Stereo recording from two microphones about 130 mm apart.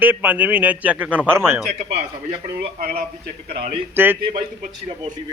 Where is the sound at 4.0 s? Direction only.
15° right (ahead or behind).